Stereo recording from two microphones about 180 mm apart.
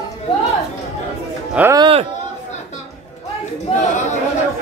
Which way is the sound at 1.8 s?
30° right (ahead or behind).